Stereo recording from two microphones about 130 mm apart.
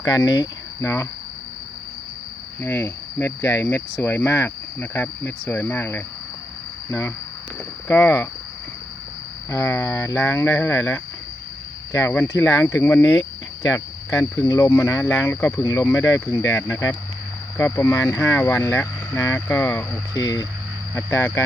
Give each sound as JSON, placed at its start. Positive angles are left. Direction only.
{"t": 0.0, "sound": "speech", "side_deg": 30}
{"t": 2.6, "sound": "cricket", "side_deg": 20}
{"t": 7.9, "sound": "speech", "side_deg": 15}
{"t": 9.5, "sound": "cricket", "side_deg": 20}
{"t": 13.7, "sound": "speech", "side_deg": 20}
{"t": 14.4, "sound": "cricket", "side_deg": 25}
{"t": 20.1, "sound": "cricket", "side_deg": 30}